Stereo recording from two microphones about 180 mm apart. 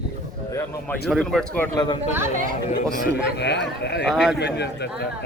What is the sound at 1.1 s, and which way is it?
Speech, centre (ahead or behind).